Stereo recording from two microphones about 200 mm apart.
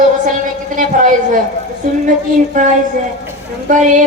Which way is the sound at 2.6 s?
40° right (ahead or behind).